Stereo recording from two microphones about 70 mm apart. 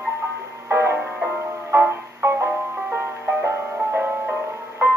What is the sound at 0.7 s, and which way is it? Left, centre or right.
Music, right.